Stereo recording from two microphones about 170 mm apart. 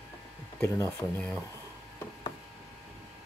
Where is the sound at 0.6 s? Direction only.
15° left (ahead or behind).